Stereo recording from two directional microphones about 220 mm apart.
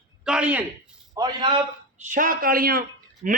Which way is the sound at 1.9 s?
35° right (ahead or behind).